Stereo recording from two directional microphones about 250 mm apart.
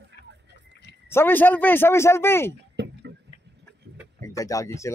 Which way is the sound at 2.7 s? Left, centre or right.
Right.